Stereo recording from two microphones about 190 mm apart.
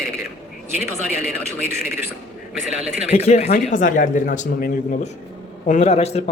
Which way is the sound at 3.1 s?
35° left (ahead or behind).